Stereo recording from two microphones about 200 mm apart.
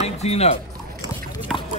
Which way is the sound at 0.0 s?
30° left (ahead or behind).